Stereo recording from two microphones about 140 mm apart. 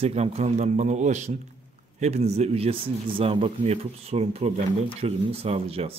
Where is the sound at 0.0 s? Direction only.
50° right (ahead or behind).